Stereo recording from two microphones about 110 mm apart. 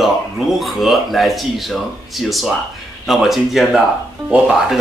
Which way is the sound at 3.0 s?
Centre (ahead or behind).